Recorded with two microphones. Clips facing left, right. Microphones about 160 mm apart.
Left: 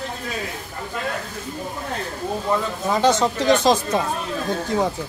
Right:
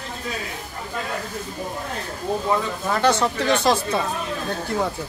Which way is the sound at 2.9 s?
15° left (ahead or behind).